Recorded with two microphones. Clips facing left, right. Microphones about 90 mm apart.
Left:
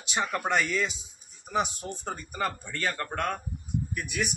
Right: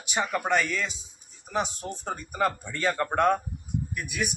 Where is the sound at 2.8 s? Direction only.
25° right (ahead or behind).